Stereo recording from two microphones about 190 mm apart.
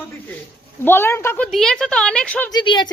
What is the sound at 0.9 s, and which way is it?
Speech, 10° left (ahead or behind).